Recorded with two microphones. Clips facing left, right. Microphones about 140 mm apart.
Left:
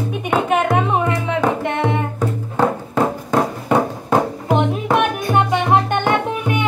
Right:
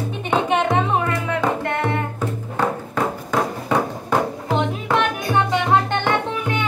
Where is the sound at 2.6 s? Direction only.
20° left (ahead or behind).